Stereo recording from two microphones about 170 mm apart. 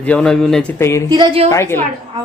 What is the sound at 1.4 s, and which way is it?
Speech, 15° left (ahead or behind).